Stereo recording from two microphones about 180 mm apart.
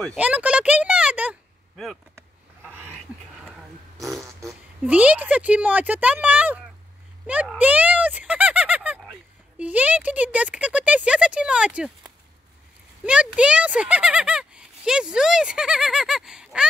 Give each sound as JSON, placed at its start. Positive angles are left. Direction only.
{"t": 0.0, "sound": "speech", "side_deg": -5}
{"t": 4.4, "sound": "a sound", "side_deg": -20}
{"t": 4.9, "sound": "speech", "side_deg": -5}
{"t": 7.2, "sound": "a sound", "side_deg": -10}
{"t": 9.6, "sound": "speech", "side_deg": -10}
{"t": 13.0, "sound": "speech", "side_deg": -5}